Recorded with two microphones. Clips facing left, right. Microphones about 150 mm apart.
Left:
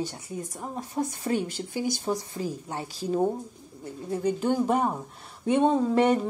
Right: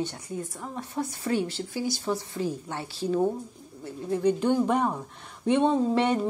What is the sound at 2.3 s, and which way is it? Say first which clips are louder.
Speech: right 2 dB; 35° left (ahead or behind).